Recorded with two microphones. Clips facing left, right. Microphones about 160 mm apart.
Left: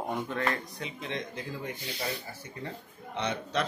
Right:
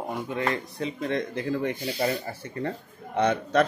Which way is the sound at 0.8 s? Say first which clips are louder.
Right 8 dB; 45° right (ahead or behind).